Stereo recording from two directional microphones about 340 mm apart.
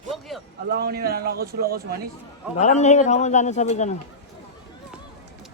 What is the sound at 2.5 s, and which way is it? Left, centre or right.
A man's voice, centre.